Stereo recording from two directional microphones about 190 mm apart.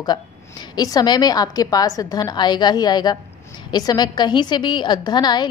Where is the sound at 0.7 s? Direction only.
20° left (ahead or behind).